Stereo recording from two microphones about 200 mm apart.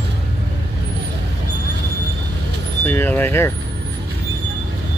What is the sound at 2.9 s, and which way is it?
Vehicle, 10° left (ahead or behind).